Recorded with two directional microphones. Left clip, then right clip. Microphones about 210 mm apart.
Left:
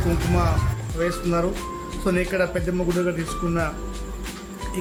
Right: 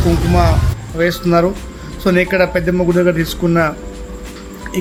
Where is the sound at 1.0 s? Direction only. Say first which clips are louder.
Right 10 dB; 15° right (ahead or behind).